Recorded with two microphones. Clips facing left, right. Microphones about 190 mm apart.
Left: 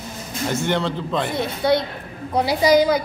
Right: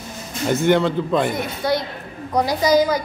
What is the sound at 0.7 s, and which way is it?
Speech, 5° right (ahead or behind).